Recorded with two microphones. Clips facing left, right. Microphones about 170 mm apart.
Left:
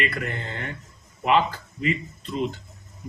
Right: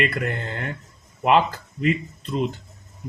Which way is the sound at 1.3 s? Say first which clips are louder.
Right 3 dB; 50° right (ahead or behind).